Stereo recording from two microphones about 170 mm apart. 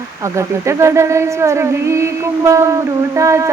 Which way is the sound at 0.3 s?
15° right (ahead or behind).